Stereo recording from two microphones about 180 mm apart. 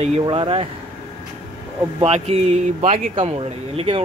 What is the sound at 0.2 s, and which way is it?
Speech, 25° right (ahead or behind).